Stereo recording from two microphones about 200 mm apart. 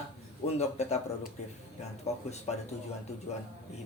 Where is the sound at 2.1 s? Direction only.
35° left (ahead or behind).